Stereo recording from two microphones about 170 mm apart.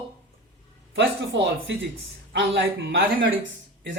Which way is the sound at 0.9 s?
90° right.